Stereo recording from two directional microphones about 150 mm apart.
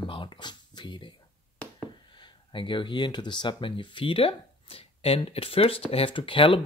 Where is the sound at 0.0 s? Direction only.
35° left (ahead or behind).